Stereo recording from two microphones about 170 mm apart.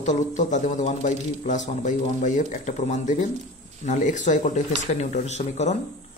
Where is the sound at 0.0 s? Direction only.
45° left (ahead or behind).